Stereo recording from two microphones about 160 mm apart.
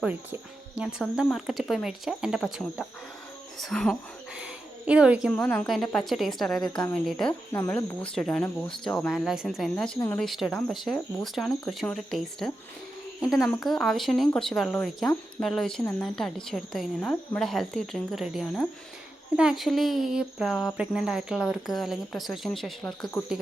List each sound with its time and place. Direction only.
0.0 s speech: 10° right (ahead or behind)
1.0 s speech: centre (ahead or behind)
5.3 s speech: 10° left (ahead or behind)
7.5 s speech: 15° left (ahead or behind)
8.1 s speech: 5° left (ahead or behind)
15.8 s speech: 15° left (ahead or behind)
16.1 s speech: 5° left (ahead or behind)